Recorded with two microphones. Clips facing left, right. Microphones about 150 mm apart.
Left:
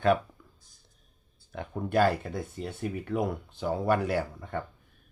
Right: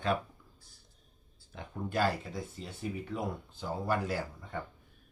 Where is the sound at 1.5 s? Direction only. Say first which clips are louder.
Left 7 dB; 60° left (ahead or behind).